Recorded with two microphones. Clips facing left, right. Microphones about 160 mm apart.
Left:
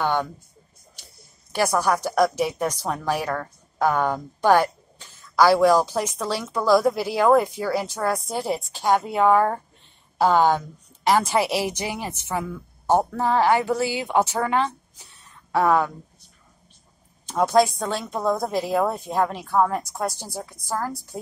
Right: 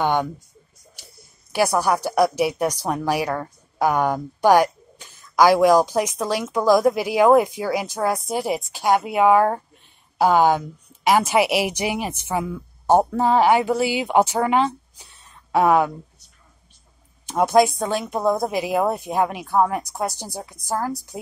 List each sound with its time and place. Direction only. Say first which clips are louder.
0.0 s speech: right 3 dB; 15° right (ahead or behind)
1.5 s a woman's voice: right 2 dB; 10° right (ahead or behind)
17.3 s a woman's voice: right 2 dB; 15° right (ahead or behind)